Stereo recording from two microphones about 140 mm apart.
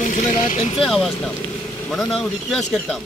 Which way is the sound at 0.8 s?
Centre (ahead or behind).